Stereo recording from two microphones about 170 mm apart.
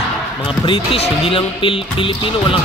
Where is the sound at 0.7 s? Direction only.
35° left (ahead or behind).